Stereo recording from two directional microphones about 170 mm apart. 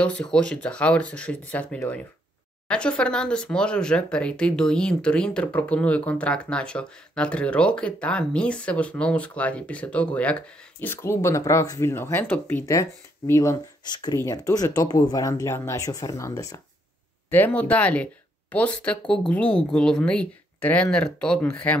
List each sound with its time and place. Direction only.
0.0 s speech: 5° left (ahead or behind)